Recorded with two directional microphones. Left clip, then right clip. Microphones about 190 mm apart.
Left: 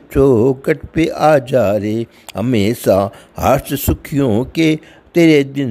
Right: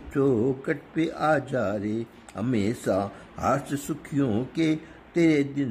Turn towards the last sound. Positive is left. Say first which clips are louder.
# left 11 dB
turn(degrees=50)  # may be behind; listen again after turning